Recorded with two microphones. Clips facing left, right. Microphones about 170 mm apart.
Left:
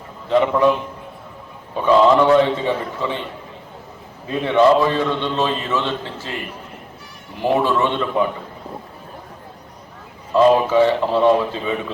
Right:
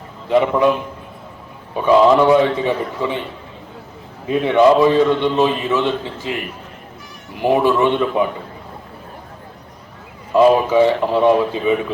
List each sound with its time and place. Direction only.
0.3 s a man's voice: 15° right (ahead or behind)
1.7 s a man's voice: 15° right (ahead or behind)
4.3 s a man's voice: 15° right (ahead or behind)
7.3 s a man's voice: 15° right (ahead or behind)
10.3 s a man's voice: 15° right (ahead or behind)